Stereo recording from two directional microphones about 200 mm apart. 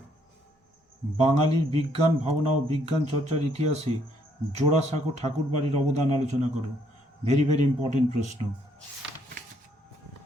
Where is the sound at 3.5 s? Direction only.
35° right (ahead or behind).